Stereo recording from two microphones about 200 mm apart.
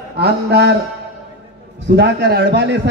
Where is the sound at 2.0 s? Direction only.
55° right (ahead or behind).